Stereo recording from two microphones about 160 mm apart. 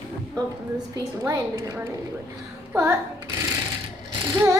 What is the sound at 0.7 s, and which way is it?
Child singing, 20° right (ahead or behind).